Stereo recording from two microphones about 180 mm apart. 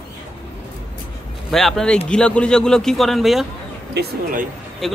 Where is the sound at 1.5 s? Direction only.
Centre (ahead or behind).